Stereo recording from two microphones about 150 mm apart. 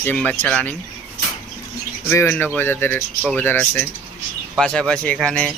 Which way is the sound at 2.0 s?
15° left (ahead or behind).